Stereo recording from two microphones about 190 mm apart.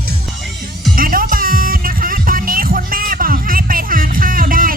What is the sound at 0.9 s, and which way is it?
Music, 50° right (ahead or behind).